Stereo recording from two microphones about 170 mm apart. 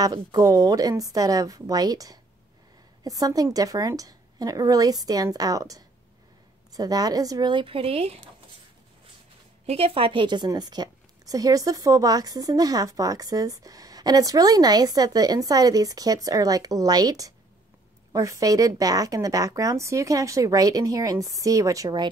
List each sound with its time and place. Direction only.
0.0 s a woman's voice: 25° right (ahead or behind)
9.7 s a woman's voice: 35° right (ahead or behind)